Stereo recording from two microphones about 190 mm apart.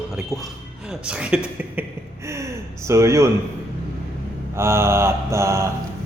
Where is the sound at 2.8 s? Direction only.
15° right (ahead or behind).